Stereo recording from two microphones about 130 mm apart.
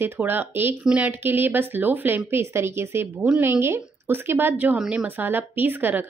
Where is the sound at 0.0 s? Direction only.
15° right (ahead or behind).